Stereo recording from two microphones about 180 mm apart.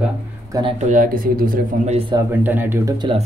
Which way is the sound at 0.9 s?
50° right (ahead or behind).